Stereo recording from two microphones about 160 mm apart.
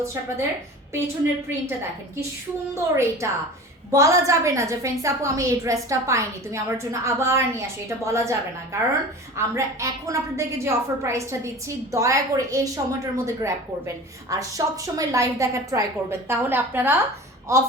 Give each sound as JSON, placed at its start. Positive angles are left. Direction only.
{"t": 0.0, "sound": "a woman's voice", "side_deg": -15}
{"t": 2.7, "sound": "a woman's voice", "side_deg": -15}